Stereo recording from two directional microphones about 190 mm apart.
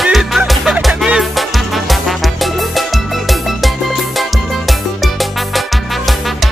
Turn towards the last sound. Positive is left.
turn(degrees=0)  # may be behind; listen again after turning